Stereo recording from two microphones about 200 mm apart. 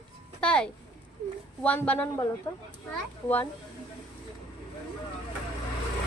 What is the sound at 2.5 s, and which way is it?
Speech, 20° left (ahead or behind).